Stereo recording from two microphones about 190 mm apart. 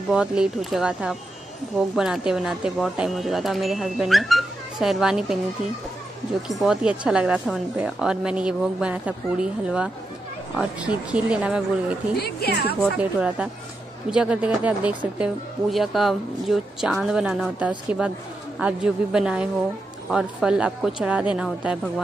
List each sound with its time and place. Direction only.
0.1 s speech: 5° right (ahead or behind)
6.4 s speech: centre (ahead or behind)
12.2 s a woman's voice: 55° left (ahead or behind)
12.9 s speech: 5° right (ahead or behind)